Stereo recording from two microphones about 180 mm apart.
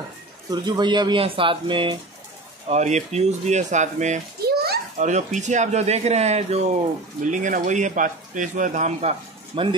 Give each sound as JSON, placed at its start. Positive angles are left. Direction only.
{"t": 0.5, "sound": "speech", "side_deg": -25}
{"t": 2.7, "sound": "speech", "side_deg": -40}
{"t": 4.5, "sound": "a sound", "side_deg": -60}
{"t": 4.9, "sound": "speech", "side_deg": -40}
{"t": 9.5, "sound": "speech", "side_deg": -30}